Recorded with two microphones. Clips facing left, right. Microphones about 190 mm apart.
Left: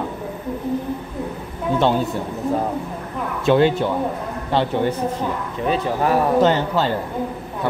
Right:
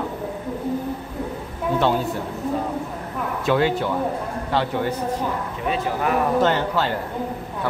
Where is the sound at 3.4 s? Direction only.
25° left (ahead or behind).